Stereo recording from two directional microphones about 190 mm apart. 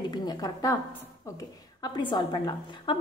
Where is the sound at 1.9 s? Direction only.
25° left (ahead or behind).